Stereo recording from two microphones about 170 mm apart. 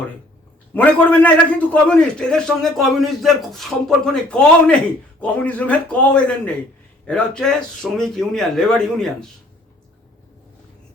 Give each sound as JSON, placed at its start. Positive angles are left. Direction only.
{"t": 0.7, "sound": "a man's voice", "side_deg": 10}